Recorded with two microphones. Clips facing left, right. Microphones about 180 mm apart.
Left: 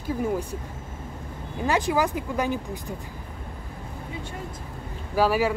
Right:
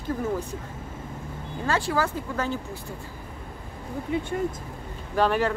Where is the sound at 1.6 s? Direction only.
15° left (ahead or behind).